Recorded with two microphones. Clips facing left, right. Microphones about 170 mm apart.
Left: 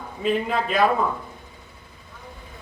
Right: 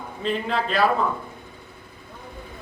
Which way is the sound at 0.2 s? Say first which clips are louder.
Left 2 dB; 15° left (ahead or behind).